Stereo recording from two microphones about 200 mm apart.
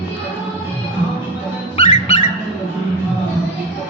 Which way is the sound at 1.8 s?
30° left (ahead or behind).